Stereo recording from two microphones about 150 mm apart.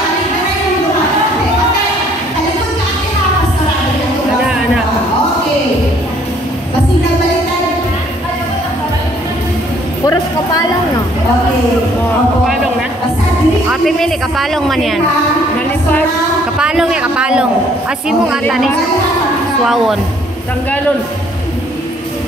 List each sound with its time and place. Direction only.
10.0 s a woman's voice: 25° left (ahead or behind)
13.7 s speech: centre (ahead or behind)
16.5 s a man's voice: 5° right (ahead or behind)
19.6 s speech: centre (ahead or behind)